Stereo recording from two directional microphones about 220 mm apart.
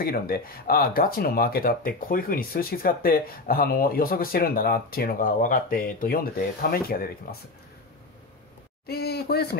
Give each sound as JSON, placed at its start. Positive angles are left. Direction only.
{"t": 0.0, "sound": "speech", "side_deg": 40}
{"t": 8.8, "sound": "speech", "side_deg": 45}